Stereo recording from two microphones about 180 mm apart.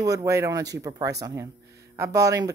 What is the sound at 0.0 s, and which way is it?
A woman's voice, 20° right (ahead or behind).